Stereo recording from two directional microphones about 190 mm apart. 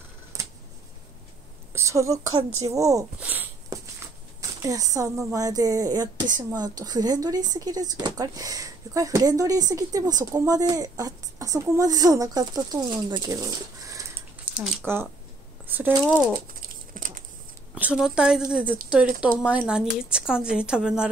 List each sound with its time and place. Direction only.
1.7 s a woman's voice: 15° right (ahead or behind)
16.6 s a sound: 45° right (ahead or behind)
17.7 s speech: 5° right (ahead or behind)